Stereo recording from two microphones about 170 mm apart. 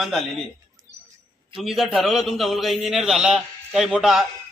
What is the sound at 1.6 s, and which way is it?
A man's voice, centre (ahead or behind).